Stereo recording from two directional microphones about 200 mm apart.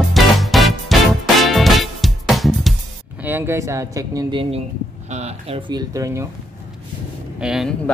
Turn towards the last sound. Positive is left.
turn(degrees=0)  # may be behind; listen again after turning